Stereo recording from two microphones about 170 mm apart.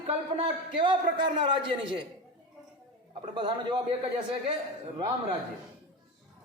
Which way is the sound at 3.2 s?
25° right (ahead or behind).